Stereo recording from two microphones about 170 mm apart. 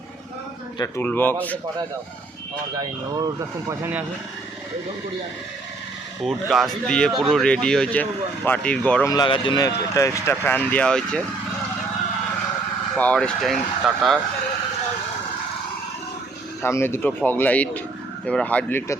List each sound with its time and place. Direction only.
0.8 s speech: 15° left (ahead or behind)
2.7 s speech: 20° right (ahead or behind)
6.2 s speech: centre (ahead or behind)
9.0 s speech: 25° left (ahead or behind); by 11.2 s 5° left (ahead or behind)
13.0 s speech: 5° left (ahead or behind)
16.6 s speech: 15° left (ahead or behind)